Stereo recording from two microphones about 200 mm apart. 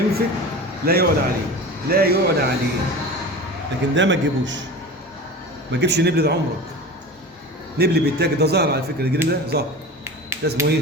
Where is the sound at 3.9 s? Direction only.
65° right (ahead or behind).